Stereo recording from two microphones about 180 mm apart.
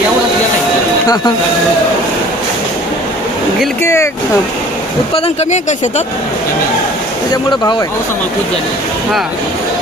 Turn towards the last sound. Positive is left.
turn(degrees=20)  # may be behind; listen again after turning